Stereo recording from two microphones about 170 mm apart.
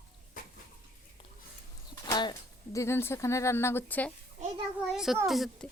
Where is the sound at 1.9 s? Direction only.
25° left (ahead or behind).